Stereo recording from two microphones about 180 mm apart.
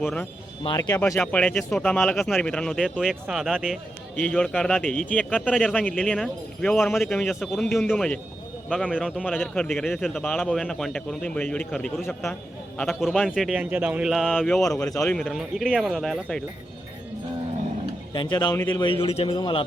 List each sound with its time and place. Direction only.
0.0 s speech: 5° left (ahead or behind)
0.6 s a man's voice: 20° left (ahead or behind); by 16.4 s centre (ahead or behind)
18.1 s a man's voice: 25° left (ahead or behind)